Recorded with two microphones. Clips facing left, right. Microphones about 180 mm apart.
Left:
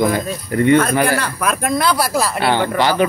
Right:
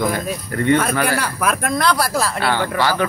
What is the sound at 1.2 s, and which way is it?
Speech, 5° right (ahead or behind).